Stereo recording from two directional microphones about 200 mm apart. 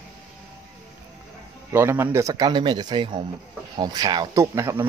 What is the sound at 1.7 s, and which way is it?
Speech, 10° right (ahead or behind).